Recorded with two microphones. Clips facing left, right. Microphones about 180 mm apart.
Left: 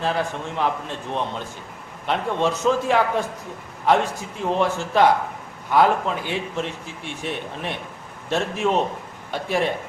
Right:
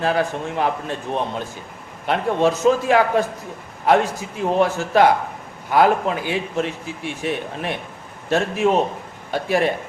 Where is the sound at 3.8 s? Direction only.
10° right (ahead or behind).